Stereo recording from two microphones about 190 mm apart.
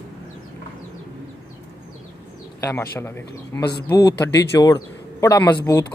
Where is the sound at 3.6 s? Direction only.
60° left (ahead or behind).